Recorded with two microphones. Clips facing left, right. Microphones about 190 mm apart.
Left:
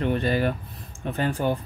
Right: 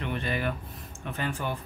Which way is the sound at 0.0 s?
40° left (ahead or behind).